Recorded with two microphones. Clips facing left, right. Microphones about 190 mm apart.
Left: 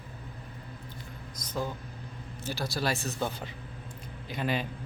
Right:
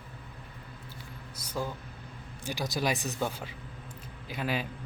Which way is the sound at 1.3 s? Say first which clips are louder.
Left 1 dB; 10° right (ahead or behind).